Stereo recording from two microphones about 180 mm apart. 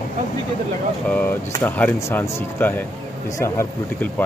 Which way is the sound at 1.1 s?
10° left (ahead or behind).